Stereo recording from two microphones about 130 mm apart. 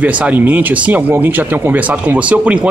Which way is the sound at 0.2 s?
10° right (ahead or behind).